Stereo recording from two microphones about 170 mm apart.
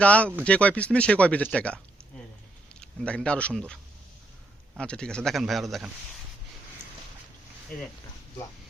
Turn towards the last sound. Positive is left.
turn(degrees=60)  # may be behind; listen again after turning